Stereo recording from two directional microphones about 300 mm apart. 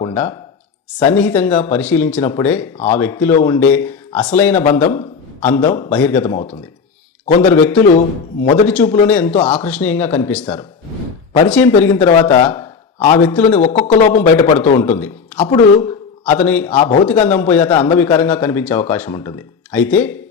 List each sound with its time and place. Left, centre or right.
0.0 s a sound: centre
1.0 s speech: centre
2.7 s speech: centre
3.0 s speech: centre
7.3 s speech: left
7.5 s speech: centre
9.3 s speech: centre
9.6 s speech: centre
12.0 s a man's voice: centre
16.7 s speech: centre
17.1 s speech: centre
17.7 s speech: centre
17.9 s speech: centre